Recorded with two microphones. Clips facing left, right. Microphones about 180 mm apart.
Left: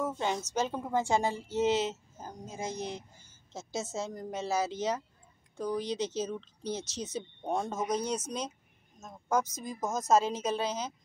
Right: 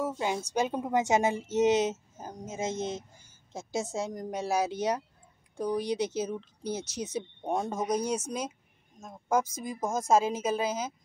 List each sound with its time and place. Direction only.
0.0 s a woman's voice: 10° right (ahead or behind)